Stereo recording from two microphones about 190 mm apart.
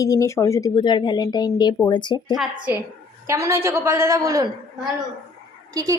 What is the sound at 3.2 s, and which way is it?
A woman's voice, 15° right (ahead or behind).